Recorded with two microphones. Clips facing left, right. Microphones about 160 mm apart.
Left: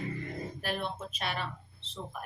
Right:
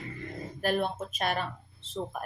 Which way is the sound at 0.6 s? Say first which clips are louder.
Right 9 dB; 45° right (ahead or behind).